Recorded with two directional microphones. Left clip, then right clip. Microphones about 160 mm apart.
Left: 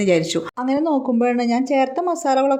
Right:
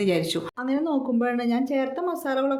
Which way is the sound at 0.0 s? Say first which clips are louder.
Left 6 dB; 30° left (ahead or behind).